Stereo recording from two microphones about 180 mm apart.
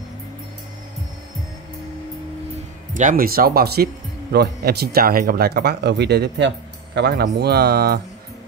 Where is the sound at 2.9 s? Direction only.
45° right (ahead or behind).